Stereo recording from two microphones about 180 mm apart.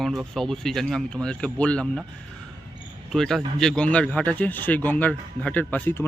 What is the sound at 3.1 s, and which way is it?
Speech, centre (ahead or behind).